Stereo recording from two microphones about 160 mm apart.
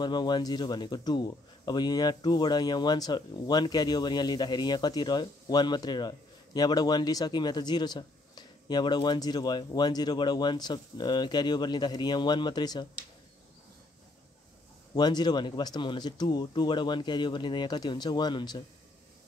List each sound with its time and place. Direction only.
0.0 s speech: 25° left (ahead or behind)
15.0 s speech: 25° left (ahead or behind)